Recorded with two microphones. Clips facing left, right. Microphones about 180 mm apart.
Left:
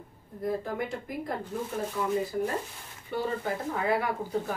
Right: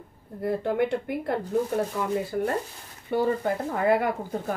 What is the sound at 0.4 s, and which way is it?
Speech, 70° right (ahead or behind).